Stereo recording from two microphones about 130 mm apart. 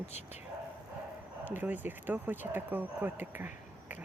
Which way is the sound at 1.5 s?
15° right (ahead or behind).